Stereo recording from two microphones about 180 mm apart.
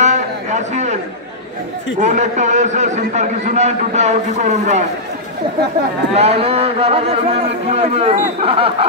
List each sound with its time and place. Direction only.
0.0 s a sound: 40° right (ahead or behind)
2.0 s a man's voice: 40° right (ahead or behind)
6.1 s a man's voice: 35° right (ahead or behind)